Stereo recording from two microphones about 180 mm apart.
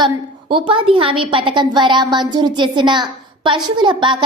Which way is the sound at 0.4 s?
30° right (ahead or behind).